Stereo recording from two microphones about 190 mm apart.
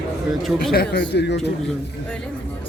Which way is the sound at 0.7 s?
60° left (ahead or behind).